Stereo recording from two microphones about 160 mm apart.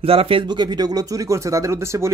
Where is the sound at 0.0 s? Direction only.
35° right (ahead or behind).